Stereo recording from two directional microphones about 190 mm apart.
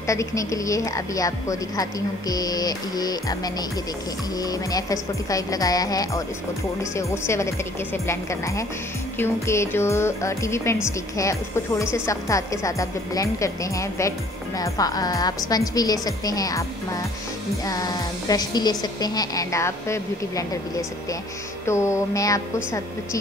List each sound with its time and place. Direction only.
0.0 s a woman's voice: 15° left (ahead or behind)
21.6 s speech: 15° left (ahead or behind)